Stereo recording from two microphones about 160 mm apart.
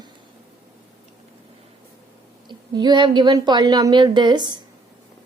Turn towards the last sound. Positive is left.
turn(degrees=-25)  # may be behind; listen again after turning